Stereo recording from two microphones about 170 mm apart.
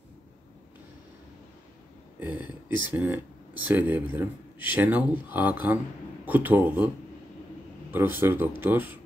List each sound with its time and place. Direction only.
2.1 s speech: 10° right (ahead or behind)
7.9 s speech: 10° right (ahead or behind)